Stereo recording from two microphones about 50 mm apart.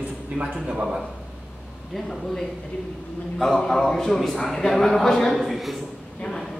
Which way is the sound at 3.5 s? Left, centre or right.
Centre.